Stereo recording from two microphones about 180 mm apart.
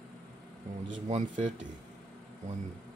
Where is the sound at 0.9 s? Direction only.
45° right (ahead or behind).